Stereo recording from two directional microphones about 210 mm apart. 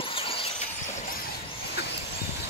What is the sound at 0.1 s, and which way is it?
Vehicle, 25° left (ahead or behind).